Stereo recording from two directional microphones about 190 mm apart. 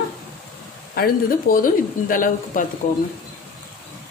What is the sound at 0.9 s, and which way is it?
Speech, 50° left (ahead or behind).